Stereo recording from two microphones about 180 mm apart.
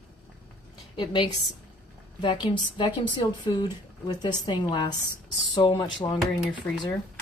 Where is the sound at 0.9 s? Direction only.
25° left (ahead or behind).